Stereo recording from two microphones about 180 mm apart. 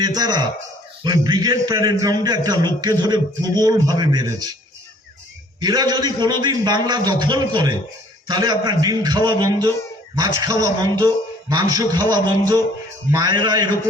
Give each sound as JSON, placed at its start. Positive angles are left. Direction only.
{"t": 0.0, "sound": "a man's voice", "side_deg": -20}
{"t": 5.5, "sound": "a man's voice", "side_deg": -20}